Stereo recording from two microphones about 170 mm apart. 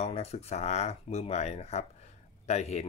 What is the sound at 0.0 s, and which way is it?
Speech, 35° left (ahead or behind).